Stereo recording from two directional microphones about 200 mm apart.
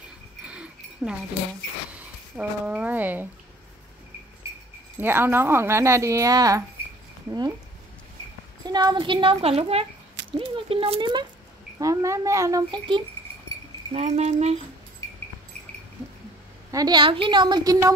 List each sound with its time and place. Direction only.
0.5 s a sound: 5° right (ahead or behind)
2.0 s speech: 5° right (ahead or behind)
5.0 s a woman's voice: 10° right (ahead or behind)
8.6 s a woman's voice: 20° right (ahead or behind)
16.7 s a woman's voice: 20° right (ahead or behind)